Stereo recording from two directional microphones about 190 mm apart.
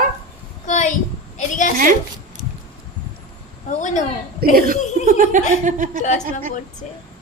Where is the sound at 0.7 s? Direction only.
40° left (ahead or behind).